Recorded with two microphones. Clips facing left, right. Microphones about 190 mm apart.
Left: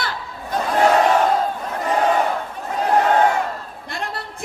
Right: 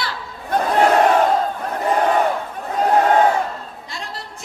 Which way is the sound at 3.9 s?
55° left (ahead or behind).